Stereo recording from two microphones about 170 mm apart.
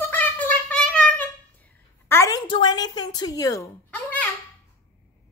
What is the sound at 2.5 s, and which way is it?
A woman's voice, 25° left (ahead or behind).